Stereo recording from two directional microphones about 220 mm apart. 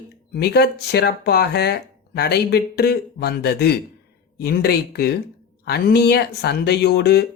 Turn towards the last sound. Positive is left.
turn(degrees=50)  # may be behind; listen again after turning